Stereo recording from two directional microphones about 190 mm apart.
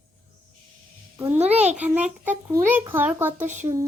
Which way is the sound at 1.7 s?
10° right (ahead or behind).